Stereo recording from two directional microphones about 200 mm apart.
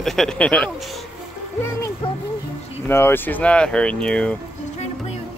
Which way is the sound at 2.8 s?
10° left (ahead or behind).